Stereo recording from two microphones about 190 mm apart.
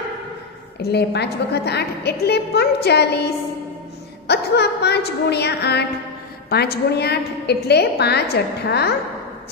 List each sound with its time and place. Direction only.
0.7 s a woman's voice: 60° left (ahead or behind)
4.3 s a woman's voice: 60° left (ahead or behind)